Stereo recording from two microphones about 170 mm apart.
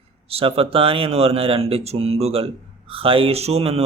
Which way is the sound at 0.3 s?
35° right (ahead or behind).